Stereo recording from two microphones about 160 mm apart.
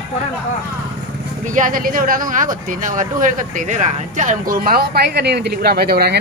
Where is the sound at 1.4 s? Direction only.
55° right (ahead or behind).